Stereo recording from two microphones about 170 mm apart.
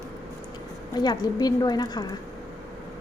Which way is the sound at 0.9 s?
25° left (ahead or behind).